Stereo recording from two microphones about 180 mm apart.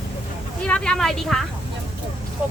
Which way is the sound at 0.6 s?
5° left (ahead or behind).